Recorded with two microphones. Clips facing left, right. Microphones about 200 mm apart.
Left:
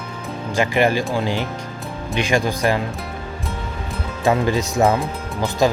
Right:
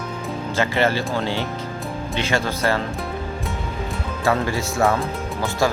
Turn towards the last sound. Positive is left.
turn(degrees=15)  # may be behind; listen again after turning